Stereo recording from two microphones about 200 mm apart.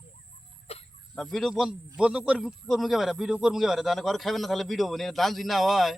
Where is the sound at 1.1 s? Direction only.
Centre (ahead or behind).